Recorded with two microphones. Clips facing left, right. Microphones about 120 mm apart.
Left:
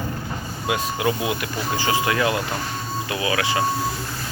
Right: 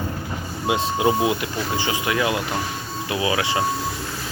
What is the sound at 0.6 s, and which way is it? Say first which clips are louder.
Speech: right 3 dB; 25° right (ahead or behind).